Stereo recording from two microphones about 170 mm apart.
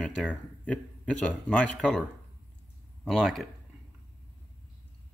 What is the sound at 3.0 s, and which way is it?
Speech, centre (ahead or behind).